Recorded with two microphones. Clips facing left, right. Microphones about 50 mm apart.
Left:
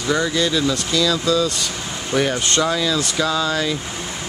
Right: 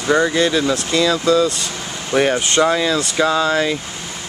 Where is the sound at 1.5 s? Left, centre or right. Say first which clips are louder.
Even; centre.